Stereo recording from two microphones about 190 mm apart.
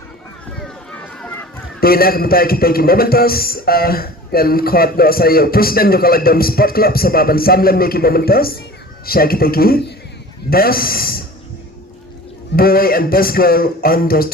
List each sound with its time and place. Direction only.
0.6 s run: 5° left (ahead or behind)
1.8 s a man's voice: 50° left (ahead or behind)
12.5 s a man's voice: 50° left (ahead or behind)